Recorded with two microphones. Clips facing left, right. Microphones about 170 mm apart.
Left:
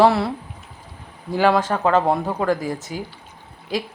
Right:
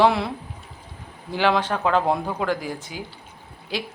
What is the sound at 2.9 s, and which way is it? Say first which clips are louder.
Speech: left 5 dB; 40° left (ahead or behind).